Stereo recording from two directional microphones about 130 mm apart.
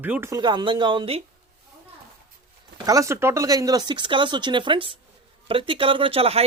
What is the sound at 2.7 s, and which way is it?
Speech, 25° right (ahead or behind).